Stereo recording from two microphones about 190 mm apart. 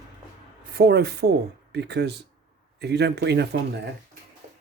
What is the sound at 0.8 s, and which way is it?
Speech, 55° right (ahead or behind).